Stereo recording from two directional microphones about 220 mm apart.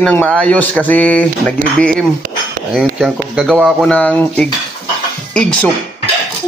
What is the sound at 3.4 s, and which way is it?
A man's voice, centre (ahead or behind).